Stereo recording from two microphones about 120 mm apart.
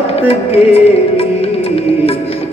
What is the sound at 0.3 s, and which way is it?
Music, 55° left (ahead or behind).